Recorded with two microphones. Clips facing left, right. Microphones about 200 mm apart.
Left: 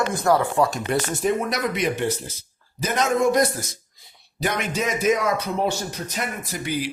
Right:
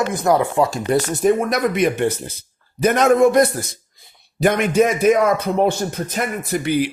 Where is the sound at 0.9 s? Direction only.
45° right (ahead or behind).